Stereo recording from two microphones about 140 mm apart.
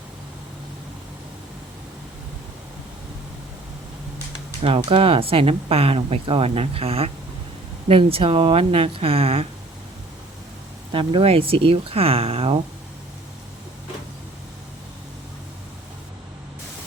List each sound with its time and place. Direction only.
4.6 s speech: 40° right (ahead or behind)
10.9 s speech: 45° right (ahead or behind)